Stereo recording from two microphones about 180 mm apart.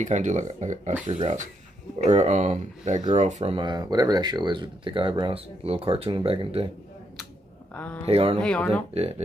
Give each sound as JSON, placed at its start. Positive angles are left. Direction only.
{"t": 0.0, "sound": "speech", "side_deg": -40}
{"t": 3.5, "sound": "speech", "side_deg": -25}
{"t": 7.7, "sound": "speech", "side_deg": 10}
{"t": 8.1, "sound": "speech", "side_deg": -30}
{"t": 8.4, "sound": "speech", "side_deg": 5}
{"t": 8.9, "sound": "speech", "side_deg": -35}